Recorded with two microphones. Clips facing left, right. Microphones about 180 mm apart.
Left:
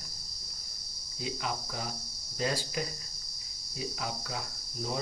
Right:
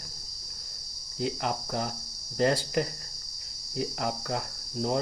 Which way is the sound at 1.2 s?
60° right (ahead or behind).